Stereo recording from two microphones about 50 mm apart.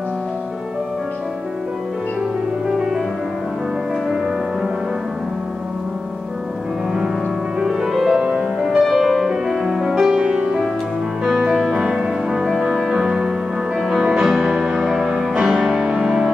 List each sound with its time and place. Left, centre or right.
7.6 s music: centre